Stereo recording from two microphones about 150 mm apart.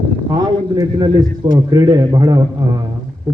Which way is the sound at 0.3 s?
25° right (ahead or behind).